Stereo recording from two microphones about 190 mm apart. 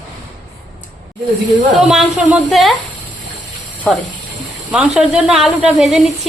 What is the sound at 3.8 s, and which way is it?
A woman's voice, 5° left (ahead or behind).